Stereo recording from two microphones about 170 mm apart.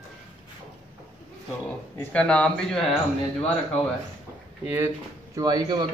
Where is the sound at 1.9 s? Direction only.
5° left (ahead or behind).